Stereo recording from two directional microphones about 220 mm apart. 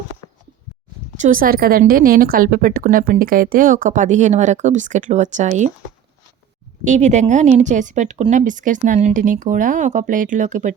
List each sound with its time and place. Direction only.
1.2 s a woman's voice: 40° right (ahead or behind)
6.8 s a woman's voice: 35° right (ahead or behind)